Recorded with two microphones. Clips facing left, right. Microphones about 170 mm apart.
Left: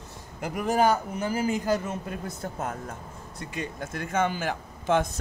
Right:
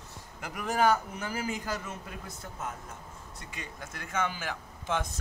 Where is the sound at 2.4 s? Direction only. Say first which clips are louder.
Left 5 dB; 65° left (ahead or behind).